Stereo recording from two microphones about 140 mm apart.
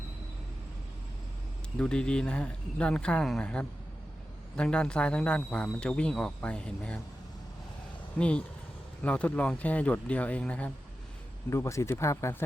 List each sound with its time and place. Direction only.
1.8 s a man's voice: 5° left (ahead or behind)
8.2 s a man's voice: 10° left (ahead or behind)
11.5 s speech: 20° left (ahead or behind)